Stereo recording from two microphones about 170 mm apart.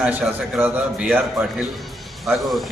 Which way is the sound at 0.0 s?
10° right (ahead or behind).